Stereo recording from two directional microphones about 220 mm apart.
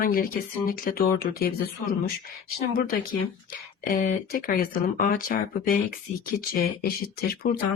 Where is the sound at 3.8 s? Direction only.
40° left (ahead or behind).